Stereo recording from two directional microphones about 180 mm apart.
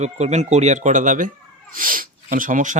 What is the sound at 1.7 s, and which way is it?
Sneeze, 50° right (ahead or behind).